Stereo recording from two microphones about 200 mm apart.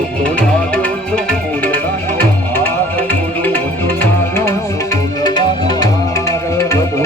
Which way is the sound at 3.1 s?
10° left (ahead or behind).